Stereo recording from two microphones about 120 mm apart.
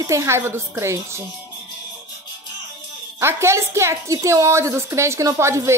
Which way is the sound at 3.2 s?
20° right (ahead or behind).